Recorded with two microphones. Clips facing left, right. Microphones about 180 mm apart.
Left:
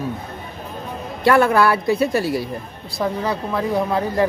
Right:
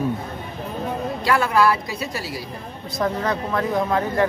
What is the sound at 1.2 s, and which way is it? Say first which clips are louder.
A woman's voice: left 4 dB; 55° left (ahead or behind).